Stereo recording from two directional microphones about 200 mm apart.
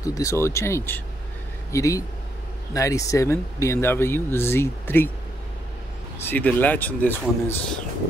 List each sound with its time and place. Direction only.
0.0 s speech: 15° left (ahead or behind)
6.2 s speech: 10° left (ahead or behind)